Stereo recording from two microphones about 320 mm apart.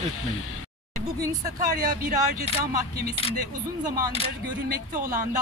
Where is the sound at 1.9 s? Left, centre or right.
Right.